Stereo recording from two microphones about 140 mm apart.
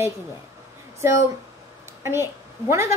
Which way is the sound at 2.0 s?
20° right (ahead or behind).